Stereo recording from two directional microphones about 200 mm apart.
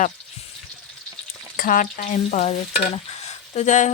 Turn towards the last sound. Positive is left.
turn(degrees=35)  # may be behind; listen again after turning